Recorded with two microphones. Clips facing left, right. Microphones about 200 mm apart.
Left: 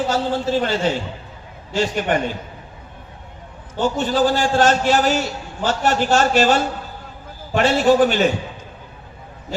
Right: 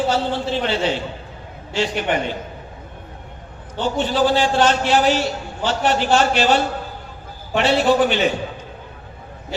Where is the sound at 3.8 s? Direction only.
45° left (ahead or behind).